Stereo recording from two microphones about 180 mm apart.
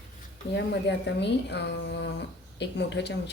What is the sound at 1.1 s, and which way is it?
Speech, 70° left (ahead or behind).